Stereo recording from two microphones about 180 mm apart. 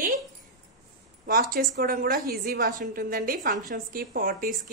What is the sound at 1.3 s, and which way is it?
A woman's voice, 55° right (ahead or behind).